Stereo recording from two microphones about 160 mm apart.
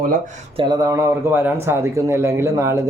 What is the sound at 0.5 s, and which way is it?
A man's voice, 25° right (ahead or behind).